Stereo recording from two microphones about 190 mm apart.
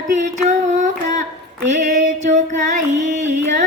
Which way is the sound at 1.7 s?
40° right (ahead or behind).